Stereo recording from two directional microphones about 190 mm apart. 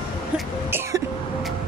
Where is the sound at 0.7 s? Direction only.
15° right (ahead or behind).